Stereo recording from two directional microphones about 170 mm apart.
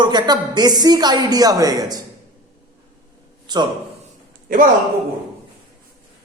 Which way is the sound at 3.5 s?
25° right (ahead or behind).